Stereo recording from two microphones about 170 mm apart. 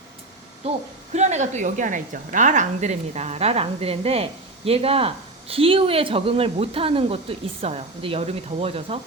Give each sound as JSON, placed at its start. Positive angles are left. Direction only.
{"t": 1.1, "sound": "a woman's voice", "side_deg": -40}